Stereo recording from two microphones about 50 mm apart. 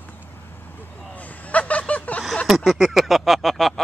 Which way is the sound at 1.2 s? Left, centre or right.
Left.